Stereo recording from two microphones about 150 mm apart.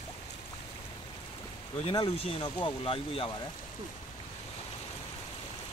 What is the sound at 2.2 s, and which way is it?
Speech, 40° left (ahead or behind).